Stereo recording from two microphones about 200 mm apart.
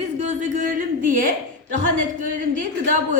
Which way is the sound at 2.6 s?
40° right (ahead or behind).